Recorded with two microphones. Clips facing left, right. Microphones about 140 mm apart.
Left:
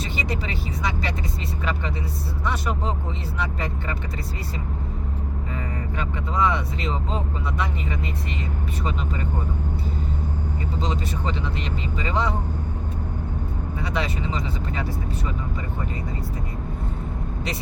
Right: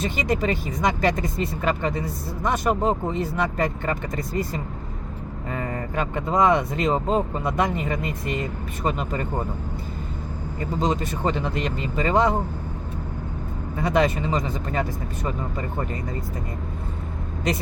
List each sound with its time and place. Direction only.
0.0 s speech: 50° right (ahead or behind)
5.5 s speech: 50° right (ahead or behind)
10.6 s speech: 45° right (ahead or behind)
13.7 s speech: 50° right (ahead or behind)